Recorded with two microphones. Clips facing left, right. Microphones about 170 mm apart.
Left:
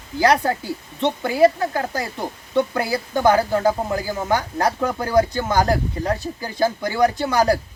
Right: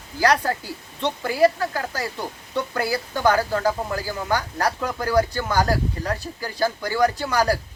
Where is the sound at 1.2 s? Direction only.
20° left (ahead or behind).